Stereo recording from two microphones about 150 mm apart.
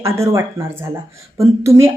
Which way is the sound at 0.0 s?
20° right (ahead or behind).